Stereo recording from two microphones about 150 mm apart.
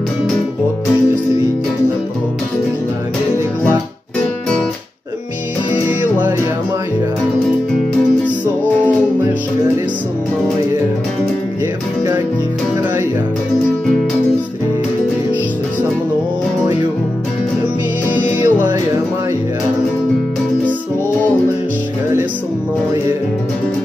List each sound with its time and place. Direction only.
5.9 s music: 10° right (ahead or behind)
18.4 s music: 15° right (ahead or behind)